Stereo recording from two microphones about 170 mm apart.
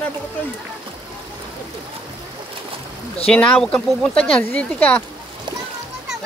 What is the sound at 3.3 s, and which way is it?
Speech, 5° left (ahead or behind).